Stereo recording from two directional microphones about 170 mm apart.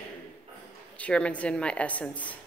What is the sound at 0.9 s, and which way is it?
A woman's voice, 5° left (ahead or behind).